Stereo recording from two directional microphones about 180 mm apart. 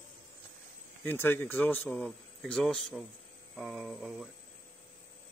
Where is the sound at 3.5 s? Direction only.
Centre (ahead or behind).